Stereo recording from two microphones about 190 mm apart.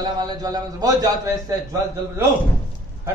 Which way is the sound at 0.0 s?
20° right (ahead or behind).